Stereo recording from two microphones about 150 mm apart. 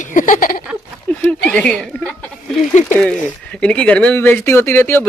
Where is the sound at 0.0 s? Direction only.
60° left (ahead or behind).